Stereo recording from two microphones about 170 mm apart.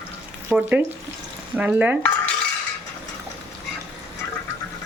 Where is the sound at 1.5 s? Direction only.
10° right (ahead or behind).